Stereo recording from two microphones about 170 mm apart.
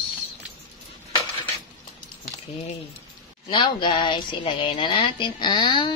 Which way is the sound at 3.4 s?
30° left (ahead or behind).